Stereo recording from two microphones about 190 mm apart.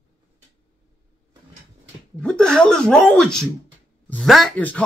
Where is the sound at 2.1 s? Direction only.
5° left (ahead or behind).